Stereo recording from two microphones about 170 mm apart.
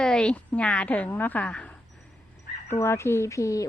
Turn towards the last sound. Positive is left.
turn(degrees=20)  # may be behind; listen again after turning